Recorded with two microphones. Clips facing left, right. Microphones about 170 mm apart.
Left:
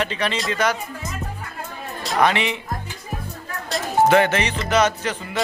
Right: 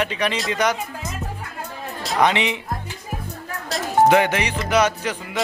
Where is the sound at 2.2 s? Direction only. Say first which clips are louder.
Right 1 dB; 20° right (ahead or behind).